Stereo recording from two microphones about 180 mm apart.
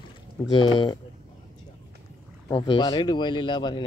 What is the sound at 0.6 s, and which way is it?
Speech, 25° left (ahead or behind).